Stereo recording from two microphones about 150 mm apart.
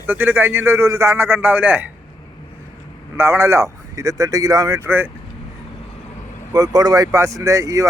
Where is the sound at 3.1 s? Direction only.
15° right (ahead or behind).